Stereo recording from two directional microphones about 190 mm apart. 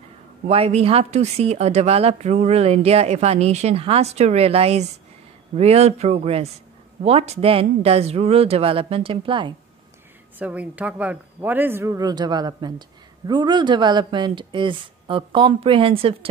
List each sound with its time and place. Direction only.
0.5 s speech: 30° right (ahead or behind)
10.4 s speech: 10° right (ahead or behind); by 16.3 s 30° right (ahead or behind)